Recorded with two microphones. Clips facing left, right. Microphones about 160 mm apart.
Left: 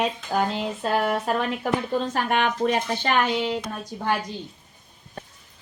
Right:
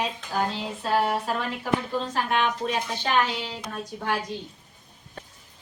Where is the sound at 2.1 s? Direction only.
60° left (ahead or behind).